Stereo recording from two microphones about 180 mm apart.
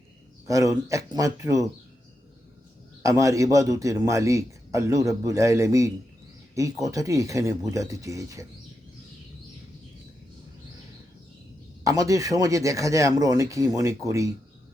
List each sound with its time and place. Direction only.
0.4 s speech: 20° right (ahead or behind)
3.0 s a man's voice: 20° right (ahead or behind)
11.8 s speech: 20° right (ahead or behind)